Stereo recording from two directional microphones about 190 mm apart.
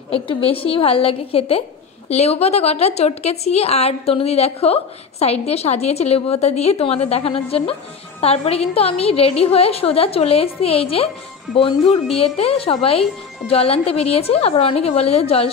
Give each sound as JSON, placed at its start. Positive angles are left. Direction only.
{"t": 0.1, "sound": "a woman's voice", "side_deg": 30}
{"t": 12.2, "sound": "a woman's voice", "side_deg": 30}